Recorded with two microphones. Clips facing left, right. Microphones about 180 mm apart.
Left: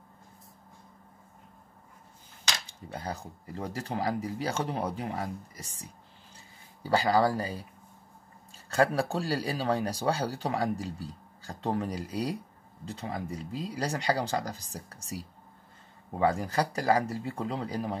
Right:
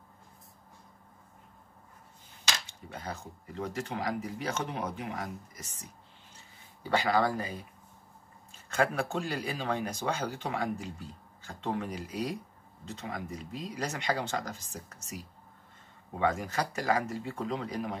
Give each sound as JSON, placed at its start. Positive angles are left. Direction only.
{"t": 2.6, "sound": "speech", "side_deg": 35}
{"t": 6.8, "sound": "speech", "side_deg": 35}
{"t": 8.6, "sound": "speech", "side_deg": 35}